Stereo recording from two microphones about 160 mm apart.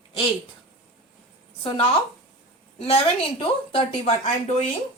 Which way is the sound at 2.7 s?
40° left (ahead or behind).